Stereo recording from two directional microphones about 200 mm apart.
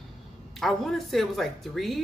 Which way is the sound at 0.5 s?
Centre (ahead or behind).